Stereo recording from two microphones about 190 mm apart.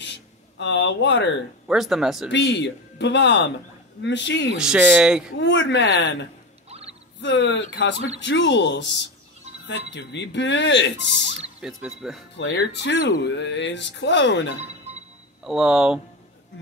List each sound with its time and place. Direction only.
0.6 s speech: 65° left (ahead or behind)
1.7 s speech: centre (ahead or behind)
2.2 s speech: 65° left (ahead or behind)
4.6 s speech: 5° right (ahead or behind)
5.4 s speech: 65° left (ahead or behind)
6.7 s a sound: 35° right (ahead or behind)
7.2 s speech: 70° left (ahead or behind)
11.6 s speech: 5° right (ahead or behind)
12.4 s speech: 70° left (ahead or behind)
15.4 s speech: 5° right (ahead or behind)